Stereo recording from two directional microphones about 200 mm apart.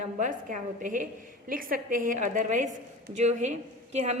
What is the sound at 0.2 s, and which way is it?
A woman's voice, 40° right (ahead or behind).